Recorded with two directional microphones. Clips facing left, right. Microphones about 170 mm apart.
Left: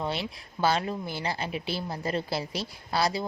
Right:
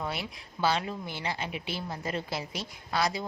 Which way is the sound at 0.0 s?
30° left (ahead or behind).